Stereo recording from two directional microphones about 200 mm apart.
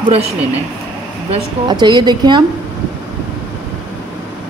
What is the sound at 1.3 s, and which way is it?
A woman's voice, 20° right (ahead or behind).